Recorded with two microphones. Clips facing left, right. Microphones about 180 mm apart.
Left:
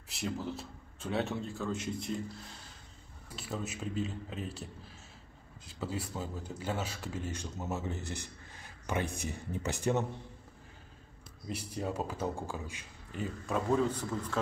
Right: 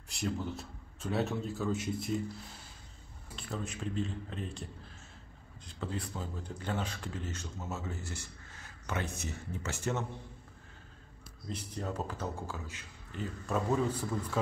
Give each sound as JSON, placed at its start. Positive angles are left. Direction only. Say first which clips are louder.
{"t": 0.1, "sound": "a man's voice", "louder": "right 1 dB", "side_deg": 0}
{"t": 3.3, "sound": "a man's voice", "louder": "left 1 dB", "side_deg": 5}
{"t": 5.8, "sound": "speech", "louder": "left 1 dB", "side_deg": 5}
{"t": 11.4, "sound": "speech", "louder": "left 2 dB", "side_deg": 10}
{"t": 13.5, "sound": "a man's voice", "louder": "left 1 dB", "side_deg": -10}